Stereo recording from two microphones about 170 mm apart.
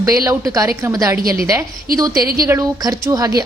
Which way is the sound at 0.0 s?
20° right (ahead or behind).